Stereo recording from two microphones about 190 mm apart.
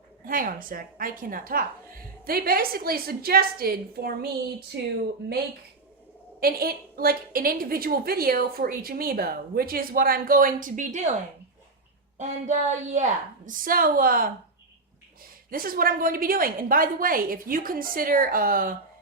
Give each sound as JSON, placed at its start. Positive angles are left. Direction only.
{"t": 0.3, "sound": "a woman's voice", "side_deg": -45}
{"t": 6.4, "sound": "a woman's voice", "side_deg": -50}
{"t": 12.1, "sound": "a woman's voice", "side_deg": -40}
{"t": 15.4, "sound": "a woman's voice", "side_deg": -50}